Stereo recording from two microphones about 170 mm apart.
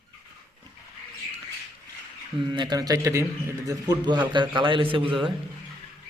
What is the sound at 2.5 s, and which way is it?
A man's voice, 25° right (ahead or behind).